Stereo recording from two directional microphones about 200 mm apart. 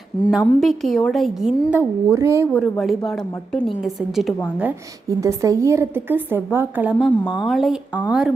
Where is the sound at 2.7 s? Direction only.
Centre (ahead or behind).